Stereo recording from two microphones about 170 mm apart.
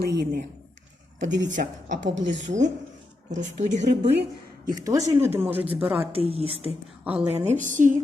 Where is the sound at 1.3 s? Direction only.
90° right.